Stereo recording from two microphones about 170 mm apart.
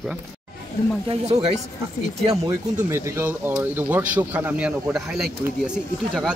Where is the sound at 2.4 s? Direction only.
15° right (ahead or behind).